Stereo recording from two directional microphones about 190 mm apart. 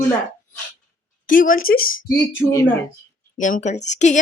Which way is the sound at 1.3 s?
45° left (ahead or behind).